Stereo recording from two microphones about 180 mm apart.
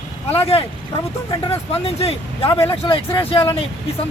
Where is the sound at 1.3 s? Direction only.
30° left (ahead or behind).